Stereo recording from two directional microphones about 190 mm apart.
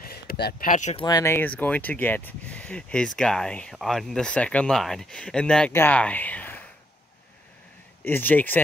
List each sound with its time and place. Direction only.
0.0 s speech: 55° left (ahead or behind); by 1.0 s 40° left (ahead or behind)
1.0 s speech: 15° left (ahead or behind)
8.0 s speech: 10° left (ahead or behind)